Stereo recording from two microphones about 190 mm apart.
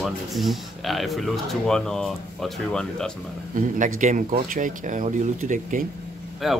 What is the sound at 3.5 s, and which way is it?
Speech, 45° right (ahead or behind).